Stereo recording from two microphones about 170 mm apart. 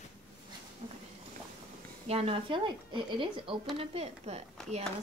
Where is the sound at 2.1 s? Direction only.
35° right (ahead or behind).